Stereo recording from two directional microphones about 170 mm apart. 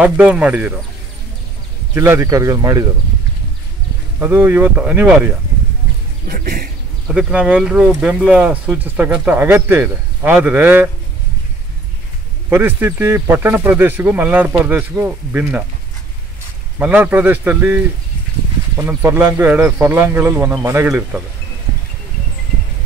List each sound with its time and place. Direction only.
0.0 s speech: 5° right (ahead or behind)
2.0 s speech: 15° right (ahead or behind)
4.2 s speech: 10° right (ahead or behind)
6.2 s speech: 60° right (ahead or behind)
7.1 s speech: 5° right (ahead or behind)
12.4 s speech: 15° right (ahead or behind)
16.7 s speech: 10° right (ahead or behind)